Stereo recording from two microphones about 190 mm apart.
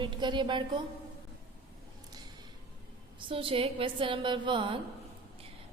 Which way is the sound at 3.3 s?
30° right (ahead or behind).